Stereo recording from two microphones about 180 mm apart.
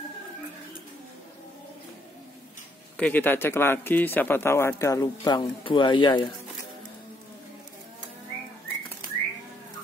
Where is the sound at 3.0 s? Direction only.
10° left (ahead or behind); by 6.3 s 25° left (ahead or behind).